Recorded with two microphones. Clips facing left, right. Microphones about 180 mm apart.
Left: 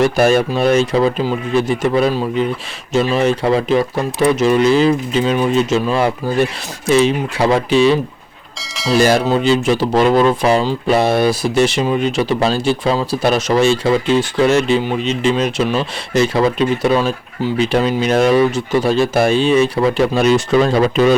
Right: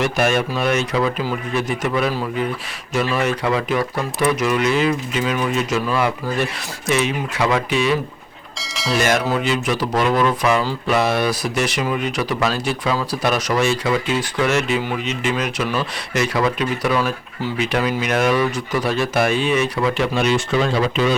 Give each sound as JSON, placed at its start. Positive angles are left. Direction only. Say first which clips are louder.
{"t": 0.0, "sound": "speech", "louder": "left 6 dB", "side_deg": 35}
{"t": 8.5, "sound": "a sound", "louder": "left 5 dB", "side_deg": 0}
{"t": 9.0, "sound": "speech", "louder": "left 6 dB", "side_deg": 35}